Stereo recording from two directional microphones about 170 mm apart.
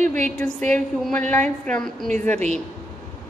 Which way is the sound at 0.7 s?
5° left (ahead or behind).